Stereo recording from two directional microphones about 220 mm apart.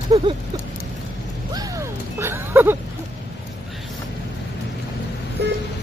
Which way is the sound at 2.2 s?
10° right (ahead or behind).